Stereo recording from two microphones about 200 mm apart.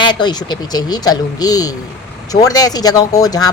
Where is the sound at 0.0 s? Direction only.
20° left (ahead or behind).